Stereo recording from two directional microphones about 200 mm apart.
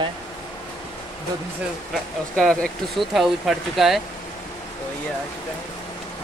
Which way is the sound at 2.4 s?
5° left (ahead or behind).